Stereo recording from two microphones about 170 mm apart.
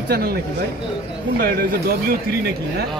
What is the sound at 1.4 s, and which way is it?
Speech, 60° right (ahead or behind).